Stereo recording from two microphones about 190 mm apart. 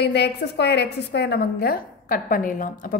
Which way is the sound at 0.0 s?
60° left (ahead or behind).